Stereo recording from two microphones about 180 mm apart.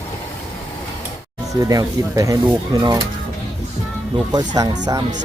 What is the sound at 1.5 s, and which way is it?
Speech, 20° right (ahead or behind).